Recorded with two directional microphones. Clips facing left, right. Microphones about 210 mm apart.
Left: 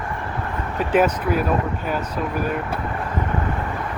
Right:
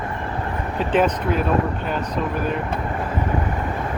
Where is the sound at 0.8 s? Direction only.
10° left (ahead or behind).